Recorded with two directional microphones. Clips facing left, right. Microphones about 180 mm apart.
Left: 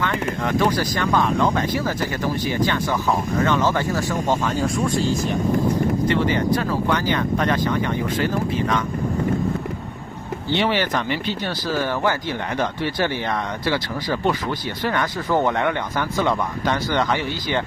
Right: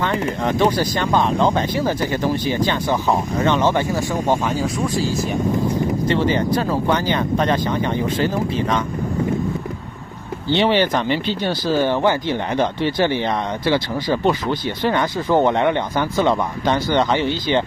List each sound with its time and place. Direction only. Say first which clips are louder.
0.0 s speech: right 3 dB; 30° right (ahead or behind); by 5.0 s 5° right (ahead or behind)
6.0 s speech: right 3 dB; 30° right (ahead or behind)
10.5 s speech: right 4 dB; 25° right (ahead or behind)